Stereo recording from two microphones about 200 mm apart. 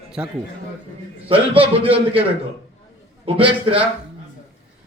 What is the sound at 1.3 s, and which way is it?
Speech, 25° right (ahead or behind).